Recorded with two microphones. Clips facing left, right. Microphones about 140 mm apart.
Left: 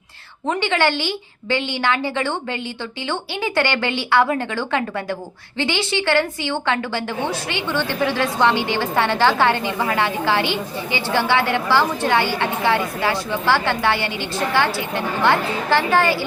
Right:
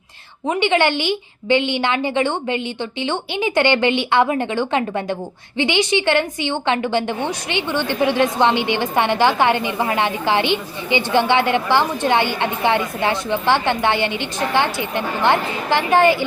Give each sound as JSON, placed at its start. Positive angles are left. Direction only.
{"t": 0.4, "sound": "a woman's voice", "side_deg": -20}